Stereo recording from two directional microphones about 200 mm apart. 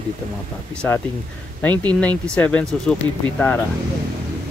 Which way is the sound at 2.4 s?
5° left (ahead or behind).